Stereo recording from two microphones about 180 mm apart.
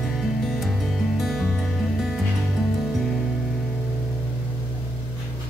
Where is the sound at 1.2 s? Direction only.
Centre (ahead or behind).